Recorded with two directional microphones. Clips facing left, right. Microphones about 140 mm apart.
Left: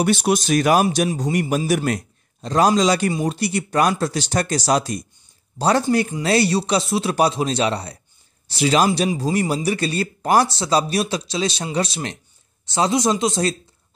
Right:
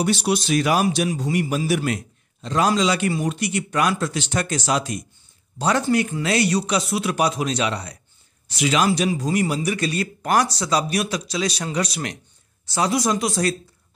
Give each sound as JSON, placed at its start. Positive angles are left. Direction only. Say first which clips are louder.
{"t": 0.0, "sound": "a man's voice", "louder": "left 3 dB", "side_deg": 50}